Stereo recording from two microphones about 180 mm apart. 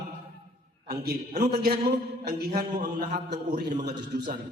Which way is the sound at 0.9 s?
60° right (ahead or behind).